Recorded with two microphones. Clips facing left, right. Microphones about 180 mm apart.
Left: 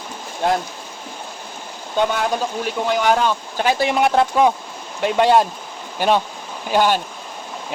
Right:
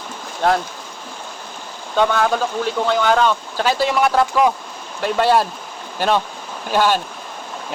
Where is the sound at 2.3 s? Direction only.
15° left (ahead or behind).